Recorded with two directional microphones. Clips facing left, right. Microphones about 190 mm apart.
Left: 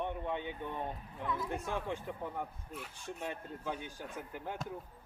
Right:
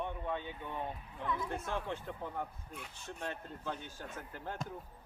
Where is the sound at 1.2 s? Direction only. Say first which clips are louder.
Even; 5° left (ahead or behind).